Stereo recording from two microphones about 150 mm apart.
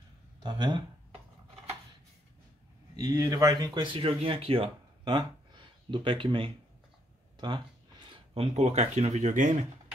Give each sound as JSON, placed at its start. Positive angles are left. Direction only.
{"t": 0.4, "sound": "speech", "side_deg": -30}
{"t": 3.0, "sound": "speech", "side_deg": -25}
{"t": 8.4, "sound": "speech", "side_deg": -45}